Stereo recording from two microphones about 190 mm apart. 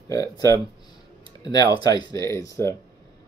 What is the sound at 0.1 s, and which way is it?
Speech, 20° left (ahead or behind).